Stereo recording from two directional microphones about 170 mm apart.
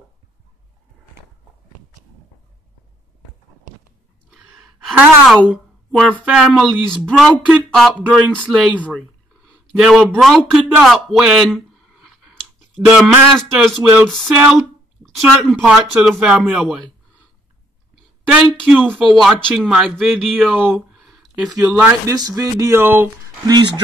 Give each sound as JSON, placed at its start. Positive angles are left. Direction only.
{"t": 4.8, "sound": "a sound", "side_deg": 0}
{"t": 6.2, "sound": "a man's voice", "side_deg": 0}
{"t": 14.2, "sound": "speech", "side_deg": -10}
{"t": 15.0, "sound": "a man's voice", "side_deg": 5}
{"t": 18.3, "sound": "a man's voice", "side_deg": 0}
{"t": 20.7, "sound": "a sound", "side_deg": 0}
{"t": 22.0, "sound": "speech", "side_deg": -20}
{"t": 23.4, "sound": "speech", "side_deg": -25}